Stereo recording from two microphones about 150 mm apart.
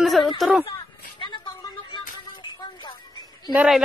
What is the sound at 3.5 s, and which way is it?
Speech, centre (ahead or behind).